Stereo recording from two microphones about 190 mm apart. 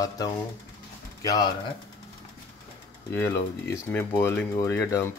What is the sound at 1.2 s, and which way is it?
Speech, 20° left (ahead or behind).